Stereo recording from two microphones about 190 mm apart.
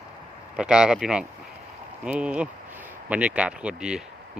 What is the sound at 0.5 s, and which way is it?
Speech, 5° right (ahead or behind).